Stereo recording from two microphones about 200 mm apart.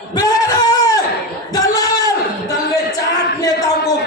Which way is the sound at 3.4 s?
20° left (ahead or behind).